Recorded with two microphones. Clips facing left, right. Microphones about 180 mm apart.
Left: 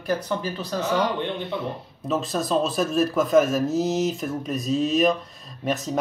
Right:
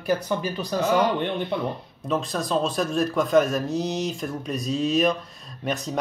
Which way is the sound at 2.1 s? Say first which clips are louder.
Left 1 dB; centre (ahead or behind).